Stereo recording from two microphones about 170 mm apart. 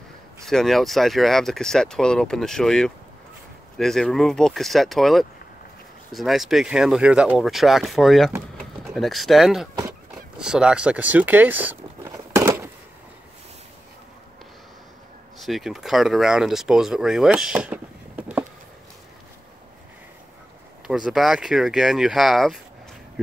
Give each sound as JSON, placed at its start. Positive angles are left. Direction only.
{"t": 0.5, "sound": "speech", "side_deg": 0}
{"t": 10.1, "sound": "a sound", "side_deg": -5}
{"t": 15.4, "sound": "speech", "side_deg": 0}
{"t": 20.8, "sound": "speech", "side_deg": -5}